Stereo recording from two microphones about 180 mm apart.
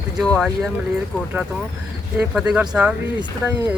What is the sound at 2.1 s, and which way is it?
Speech, 5° right (ahead or behind).